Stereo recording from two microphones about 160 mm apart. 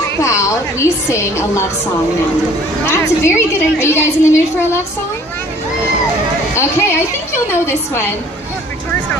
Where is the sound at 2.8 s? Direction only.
15° left (ahead or behind).